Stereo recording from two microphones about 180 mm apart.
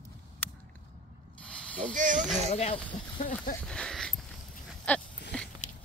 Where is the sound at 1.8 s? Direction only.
45° right (ahead or behind).